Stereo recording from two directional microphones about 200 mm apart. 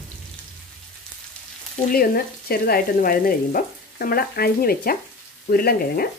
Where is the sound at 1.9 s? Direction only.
50° left (ahead or behind).